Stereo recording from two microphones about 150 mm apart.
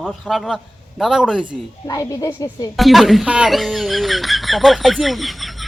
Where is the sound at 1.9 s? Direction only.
20° left (ahead or behind).